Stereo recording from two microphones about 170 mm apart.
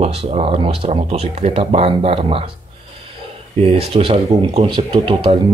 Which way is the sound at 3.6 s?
35° right (ahead or behind).